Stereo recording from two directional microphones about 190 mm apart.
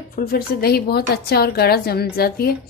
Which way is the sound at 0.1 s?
55° left (ahead or behind).